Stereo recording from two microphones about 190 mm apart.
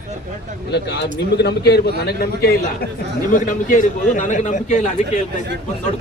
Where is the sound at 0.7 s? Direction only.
65° left (ahead or behind).